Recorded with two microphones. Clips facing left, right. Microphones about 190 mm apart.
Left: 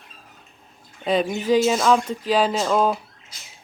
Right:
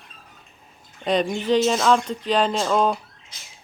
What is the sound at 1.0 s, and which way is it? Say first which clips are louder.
Speech: left 1 dB; 5° left (ahead or behind).